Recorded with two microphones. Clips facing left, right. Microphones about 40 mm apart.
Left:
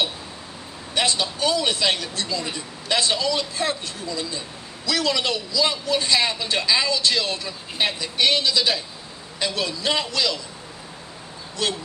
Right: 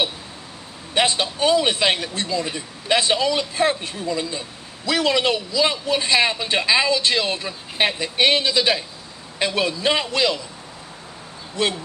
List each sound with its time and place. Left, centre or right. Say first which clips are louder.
0.9 s a man's voice: right 3 dB; right
11.6 s a man's voice: right 3 dB; right